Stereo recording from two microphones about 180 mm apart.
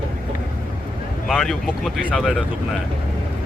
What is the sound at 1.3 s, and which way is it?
Speech, centre (ahead or behind).